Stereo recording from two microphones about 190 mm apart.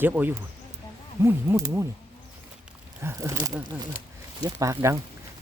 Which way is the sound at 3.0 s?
15° right (ahead or behind).